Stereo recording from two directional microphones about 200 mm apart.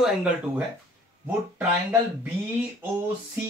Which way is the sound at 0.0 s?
5° right (ahead or behind).